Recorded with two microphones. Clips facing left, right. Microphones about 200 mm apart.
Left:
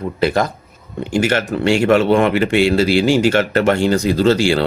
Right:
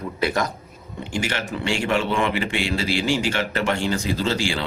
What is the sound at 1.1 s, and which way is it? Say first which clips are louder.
Speech: left 10 dB; 45° left (ahead or behind).